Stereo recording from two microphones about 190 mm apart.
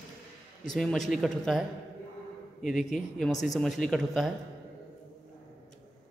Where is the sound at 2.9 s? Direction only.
Centre (ahead or behind).